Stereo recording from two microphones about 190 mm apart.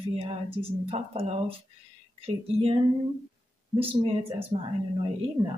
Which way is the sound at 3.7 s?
30° right (ahead or behind).